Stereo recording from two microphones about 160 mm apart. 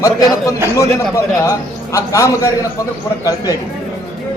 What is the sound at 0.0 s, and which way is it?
A man's voice, 20° left (ahead or behind).